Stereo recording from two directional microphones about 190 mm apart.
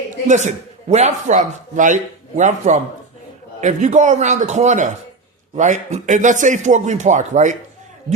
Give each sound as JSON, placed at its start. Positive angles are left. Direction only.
{"t": 0.3, "sound": "a man's voice", "side_deg": -40}